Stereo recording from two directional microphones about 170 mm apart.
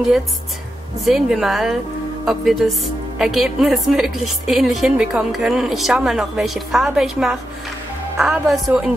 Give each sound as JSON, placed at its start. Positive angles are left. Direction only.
{"t": 1.0, "sound": "a woman's voice", "side_deg": 0}